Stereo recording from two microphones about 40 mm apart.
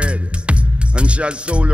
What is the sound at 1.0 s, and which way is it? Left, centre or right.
Speech, right.